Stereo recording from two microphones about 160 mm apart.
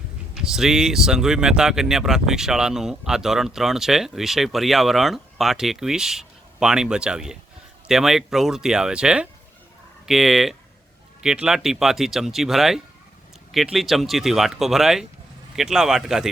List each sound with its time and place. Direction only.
0.3 s speech: 5° right (ahead or behind)